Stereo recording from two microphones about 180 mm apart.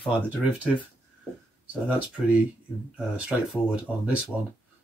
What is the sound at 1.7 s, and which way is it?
Speech, 10° right (ahead or behind).